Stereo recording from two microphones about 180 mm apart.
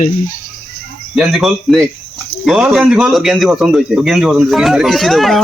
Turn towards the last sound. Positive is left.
turn(degrees=0)  # may be behind; listen again after turning